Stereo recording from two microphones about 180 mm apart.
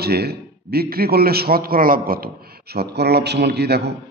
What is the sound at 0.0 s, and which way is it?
A man's voice, 60° right (ahead or behind).